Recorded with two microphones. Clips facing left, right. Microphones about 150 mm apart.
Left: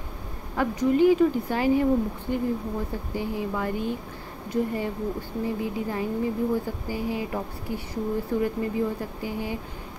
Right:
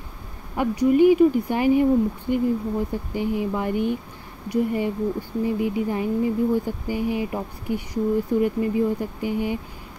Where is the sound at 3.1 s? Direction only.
15° right (ahead or behind).